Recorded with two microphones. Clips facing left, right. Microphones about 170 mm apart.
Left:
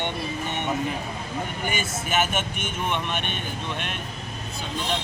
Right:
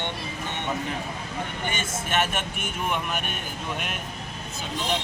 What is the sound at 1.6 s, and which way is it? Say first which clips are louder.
Speech: left 2 dB; 10° left (ahead or behind).